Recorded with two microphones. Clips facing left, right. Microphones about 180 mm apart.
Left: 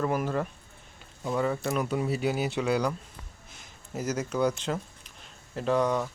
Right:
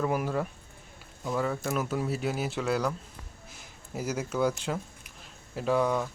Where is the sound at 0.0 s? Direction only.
5° right (ahead or behind).